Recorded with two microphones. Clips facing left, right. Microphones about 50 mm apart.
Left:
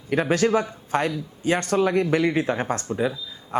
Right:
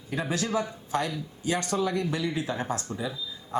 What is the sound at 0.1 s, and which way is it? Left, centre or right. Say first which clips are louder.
Speech: left 8 dB; left.